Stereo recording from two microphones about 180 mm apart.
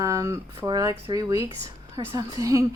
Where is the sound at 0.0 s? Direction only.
15° right (ahead or behind).